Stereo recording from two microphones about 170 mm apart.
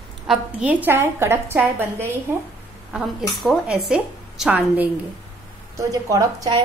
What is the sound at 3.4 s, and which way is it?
A woman's voice, centre (ahead or behind).